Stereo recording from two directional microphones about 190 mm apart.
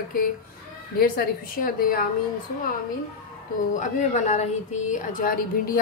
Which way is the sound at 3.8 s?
40° left (ahead or behind).